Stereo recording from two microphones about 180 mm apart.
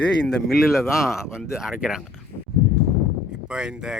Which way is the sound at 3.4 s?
5° right (ahead or behind).